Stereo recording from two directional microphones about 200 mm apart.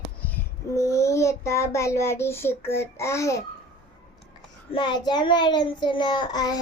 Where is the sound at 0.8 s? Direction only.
15° left (ahead or behind).